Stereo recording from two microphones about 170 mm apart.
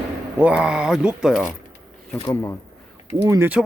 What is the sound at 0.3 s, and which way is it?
Speech, 5° right (ahead or behind).